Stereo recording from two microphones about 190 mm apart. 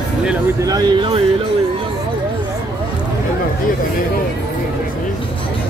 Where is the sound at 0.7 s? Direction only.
25° right (ahead or behind).